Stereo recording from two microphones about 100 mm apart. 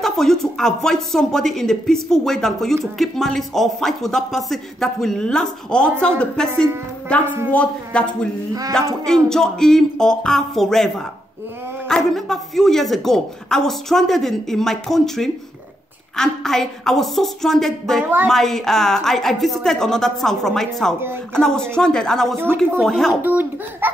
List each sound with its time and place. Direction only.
0.0 s speech: 5° left (ahead or behind)
18.0 s a child's voice: 20° right (ahead or behind)
18.3 s speech: 5° left (ahead or behind)
23.2 s a child's voice: 20° right (ahead or behind)